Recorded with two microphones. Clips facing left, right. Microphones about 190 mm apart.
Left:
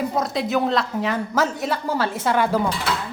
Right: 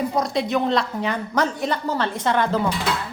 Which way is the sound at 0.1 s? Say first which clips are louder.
Even; 5° left (ahead or behind).